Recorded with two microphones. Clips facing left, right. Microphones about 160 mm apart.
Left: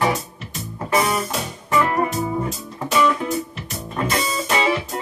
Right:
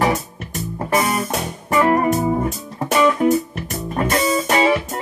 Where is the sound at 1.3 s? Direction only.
50° right (ahead or behind).